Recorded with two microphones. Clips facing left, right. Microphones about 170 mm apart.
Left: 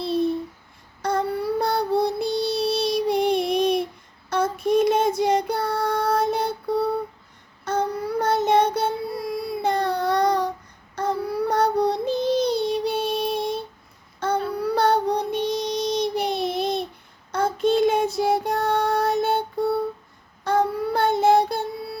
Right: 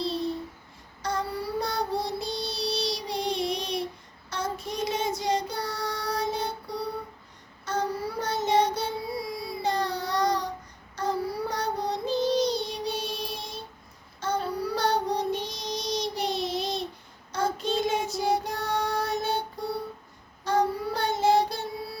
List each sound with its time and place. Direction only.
0.0 s babbling: 55° left (ahead or behind)
1.0 s child singing: 55° left (ahead or behind)